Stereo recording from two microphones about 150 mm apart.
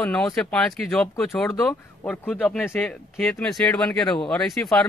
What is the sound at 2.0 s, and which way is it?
Speech, 10° left (ahead or behind).